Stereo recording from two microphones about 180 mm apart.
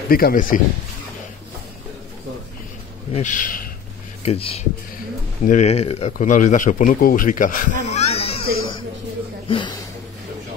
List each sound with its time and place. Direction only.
0.1 s speech: 50° left (ahead or behind)
3.1 s speech: 45° left (ahead or behind)
4.2 s speech: 35° left (ahead or behind)
7.8 s a sound: 40° left (ahead or behind)
9.5 s speech: 25° left (ahead or behind)